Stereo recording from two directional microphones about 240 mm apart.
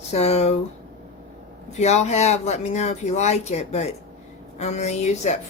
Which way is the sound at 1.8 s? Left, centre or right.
Left.